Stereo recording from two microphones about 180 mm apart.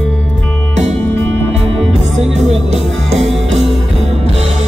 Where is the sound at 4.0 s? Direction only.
35° right (ahead or behind).